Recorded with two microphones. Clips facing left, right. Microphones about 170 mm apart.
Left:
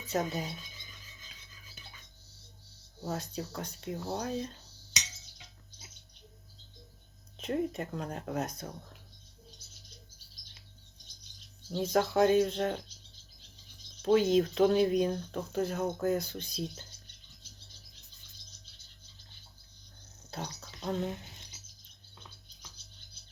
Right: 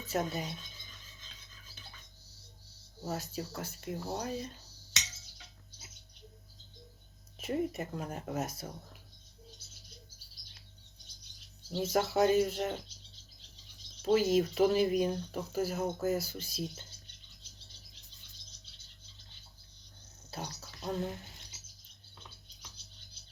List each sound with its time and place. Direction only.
0.0 s filing: centre (ahead or behind)
3.1 s speech: 5° right (ahead or behind)
7.3 s speech: 5° right (ahead or behind)
11.7 s speech: 5° right (ahead or behind)
14.0 s speech: 5° right (ahead or behind)
20.3 s speech: 5° right (ahead or behind)
21.0 s speech: 20° left (ahead or behind)